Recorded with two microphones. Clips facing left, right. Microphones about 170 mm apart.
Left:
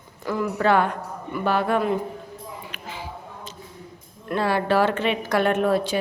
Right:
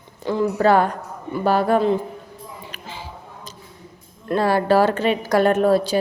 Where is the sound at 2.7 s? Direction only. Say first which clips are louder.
Even; 30° right (ahead or behind).